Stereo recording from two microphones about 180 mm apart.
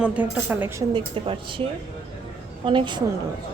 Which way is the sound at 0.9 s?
30° right (ahead or behind).